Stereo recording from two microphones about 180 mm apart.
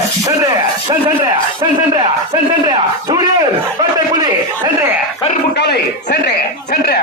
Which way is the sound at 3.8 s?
20° right (ahead or behind).